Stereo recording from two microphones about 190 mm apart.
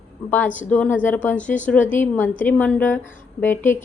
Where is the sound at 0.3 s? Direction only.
10° left (ahead or behind).